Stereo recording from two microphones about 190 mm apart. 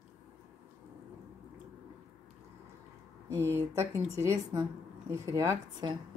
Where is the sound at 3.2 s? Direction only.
15° right (ahead or behind).